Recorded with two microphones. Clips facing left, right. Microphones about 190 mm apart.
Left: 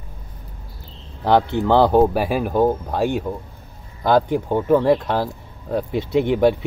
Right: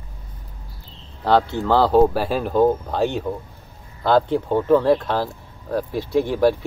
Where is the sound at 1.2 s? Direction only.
15° left (ahead or behind).